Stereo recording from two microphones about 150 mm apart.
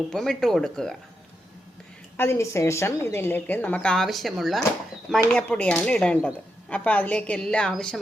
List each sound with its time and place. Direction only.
0.1 s speech: 5° left (ahead or behind)
2.1 s speech: 15° left (ahead or behind)